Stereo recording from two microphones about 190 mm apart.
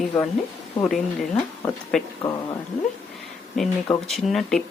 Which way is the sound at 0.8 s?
Centre (ahead or behind).